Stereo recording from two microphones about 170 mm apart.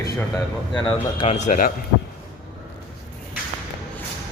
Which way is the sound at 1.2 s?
40° left (ahead or behind).